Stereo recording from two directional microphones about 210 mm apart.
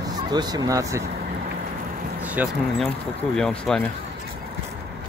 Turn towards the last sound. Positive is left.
turn(degrees=5)  # may be behind; listen again after turning